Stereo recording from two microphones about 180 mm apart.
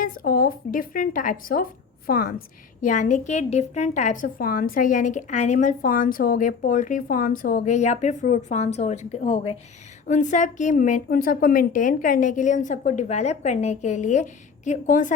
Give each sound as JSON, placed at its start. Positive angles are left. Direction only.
{"t": 0.0, "sound": "a woman's voice", "side_deg": 50}
{"t": 2.8, "sound": "a woman's voice", "side_deg": 45}